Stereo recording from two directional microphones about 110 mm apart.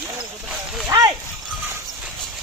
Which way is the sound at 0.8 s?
35° right (ahead or behind).